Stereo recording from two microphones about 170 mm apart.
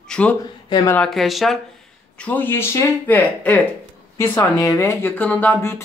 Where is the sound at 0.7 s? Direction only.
20° left (ahead or behind).